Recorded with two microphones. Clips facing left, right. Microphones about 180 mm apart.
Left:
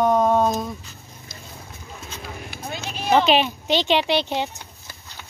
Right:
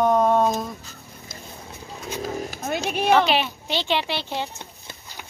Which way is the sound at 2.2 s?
40° right (ahead or behind).